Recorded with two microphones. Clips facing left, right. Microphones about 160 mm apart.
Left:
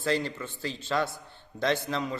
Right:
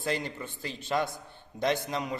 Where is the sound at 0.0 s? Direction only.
20° right (ahead or behind).